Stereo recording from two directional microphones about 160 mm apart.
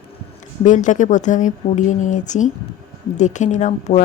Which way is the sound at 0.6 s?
50° left (ahead or behind).